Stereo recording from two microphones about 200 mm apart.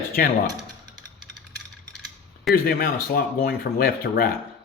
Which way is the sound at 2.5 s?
50° left (ahead or behind).